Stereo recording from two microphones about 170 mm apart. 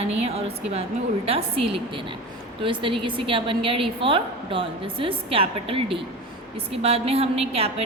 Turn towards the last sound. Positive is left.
turn(degrees=-35)  # may be behind; listen again after turning